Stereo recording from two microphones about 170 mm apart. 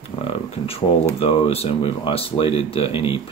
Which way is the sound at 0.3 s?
35° left (ahead or behind).